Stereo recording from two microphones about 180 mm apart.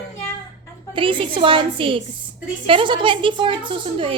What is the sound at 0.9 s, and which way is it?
Speech, 30° right (ahead or behind).